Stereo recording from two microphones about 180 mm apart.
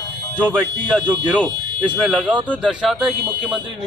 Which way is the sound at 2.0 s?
5° right (ahead or behind).